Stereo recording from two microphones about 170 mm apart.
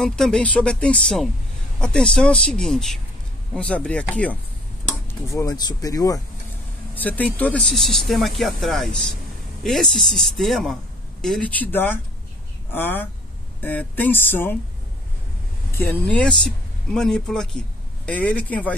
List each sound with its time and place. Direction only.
0.0 s speech: 5° left (ahead or behind); by 6.2 s 20° left (ahead or behind)
7.0 s speech: 10° left (ahead or behind)
15.7 s speech: 15° left (ahead or behind)